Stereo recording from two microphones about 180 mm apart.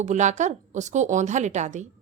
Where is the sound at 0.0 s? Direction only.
40° right (ahead or behind).